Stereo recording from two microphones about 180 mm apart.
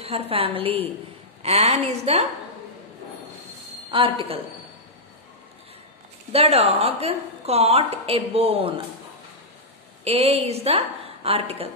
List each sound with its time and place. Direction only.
0.0 s a woman's voice: 35° right (ahead or behind)
3.9 s a woman's voice: 30° right (ahead or behind)
6.3 s a woman's voice: 35° right (ahead or behind)
10.0 s a woman's voice: 35° right (ahead or behind)